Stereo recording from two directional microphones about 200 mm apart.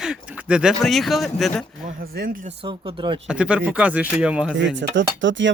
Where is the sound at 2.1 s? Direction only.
45° right (ahead or behind).